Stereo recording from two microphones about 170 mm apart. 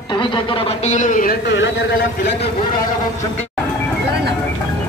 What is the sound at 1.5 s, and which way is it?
Speech, 90° left.